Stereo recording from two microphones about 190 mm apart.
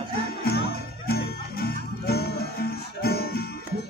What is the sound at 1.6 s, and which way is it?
Music, 55° left (ahead or behind).